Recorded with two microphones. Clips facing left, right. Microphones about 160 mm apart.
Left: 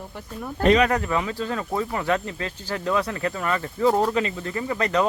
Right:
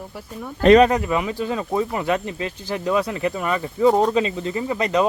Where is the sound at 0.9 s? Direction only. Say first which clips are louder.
Right 2 dB; 15° right (ahead or behind).